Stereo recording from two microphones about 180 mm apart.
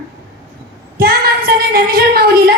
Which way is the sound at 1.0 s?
55° right (ahead or behind).